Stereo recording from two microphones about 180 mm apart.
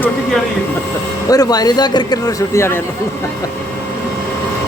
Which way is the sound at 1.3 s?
20° left (ahead or behind).